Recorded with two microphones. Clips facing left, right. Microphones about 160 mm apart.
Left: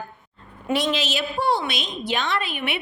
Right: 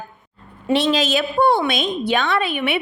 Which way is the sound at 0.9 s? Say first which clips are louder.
Right 6 dB; 50° right (ahead or behind).